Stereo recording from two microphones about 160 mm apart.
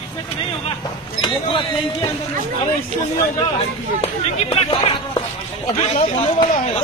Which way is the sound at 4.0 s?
40° left (ahead or behind).